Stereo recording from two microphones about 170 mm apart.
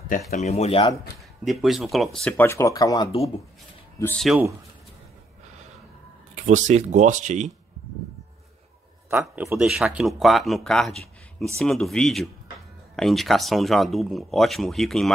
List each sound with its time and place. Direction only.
0.3 s speech: 40° left (ahead or behind)
1.4 s speech: centre (ahead or behind); by 3.1 s 20° left (ahead or behind)
4.3 s speech: 5° right (ahead or behind)
6.3 s speech: 45° right (ahead or behind)
9.1 s a man's voice: 15° right (ahead or behind)
9.6 s speech: centre (ahead or behind)